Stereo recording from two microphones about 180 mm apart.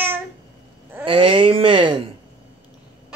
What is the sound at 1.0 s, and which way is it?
Speech, 30° right (ahead or behind).